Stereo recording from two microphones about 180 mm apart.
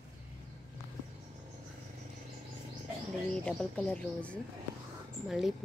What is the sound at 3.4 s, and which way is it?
Speech, 5° left (ahead or behind).